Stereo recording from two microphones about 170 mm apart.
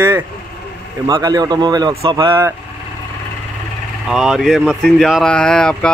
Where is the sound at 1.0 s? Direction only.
25° right (ahead or behind).